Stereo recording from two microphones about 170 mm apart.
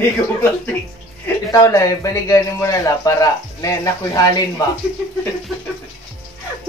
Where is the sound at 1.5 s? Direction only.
20° left (ahead or behind).